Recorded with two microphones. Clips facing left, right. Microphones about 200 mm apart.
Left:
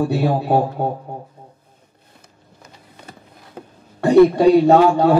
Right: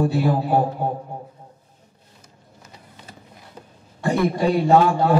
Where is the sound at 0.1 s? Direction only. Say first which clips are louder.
Left 2 dB; 65° left (ahead or behind).